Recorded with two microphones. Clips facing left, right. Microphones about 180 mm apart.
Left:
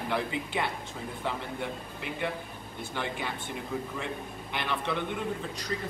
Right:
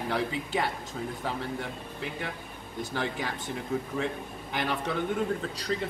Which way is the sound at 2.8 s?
40° right (ahead or behind).